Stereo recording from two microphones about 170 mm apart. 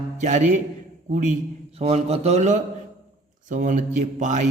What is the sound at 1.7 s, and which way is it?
A man's voice, 35° right (ahead or behind).